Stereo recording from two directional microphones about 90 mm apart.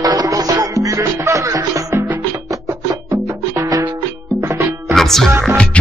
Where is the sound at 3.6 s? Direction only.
40° right (ahead or behind).